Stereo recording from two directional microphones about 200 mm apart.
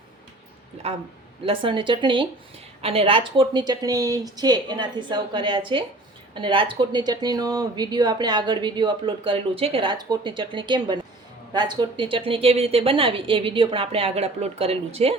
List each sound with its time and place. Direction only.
1.5 s speech: 25° right (ahead or behind)